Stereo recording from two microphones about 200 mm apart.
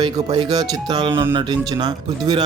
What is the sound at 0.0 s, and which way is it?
Speech, 20° right (ahead or behind).